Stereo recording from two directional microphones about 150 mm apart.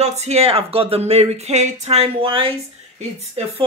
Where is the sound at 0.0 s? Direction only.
45° right (ahead or behind).